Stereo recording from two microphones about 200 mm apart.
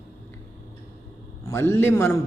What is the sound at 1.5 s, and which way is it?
Speech, 10° left (ahead or behind).